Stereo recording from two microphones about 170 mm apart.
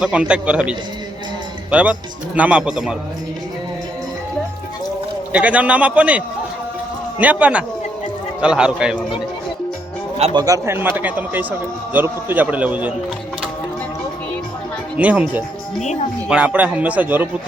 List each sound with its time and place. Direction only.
0.0 s speech: 5° right (ahead or behind)
5.3 s a man's voice: 10° right (ahead or behind)
10.3 s speech: 20° right (ahead or behind)
14.9 s speech: 10° right (ahead or behind)